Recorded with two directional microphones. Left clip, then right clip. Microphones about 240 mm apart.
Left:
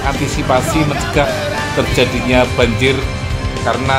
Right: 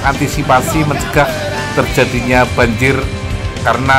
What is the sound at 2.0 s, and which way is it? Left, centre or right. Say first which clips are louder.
Speech: right 1 dB; centre.